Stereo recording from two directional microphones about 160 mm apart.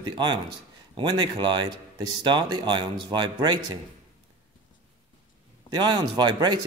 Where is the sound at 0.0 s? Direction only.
25° right (ahead or behind).